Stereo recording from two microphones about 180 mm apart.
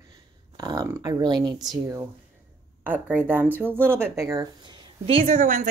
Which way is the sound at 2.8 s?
10° right (ahead or behind).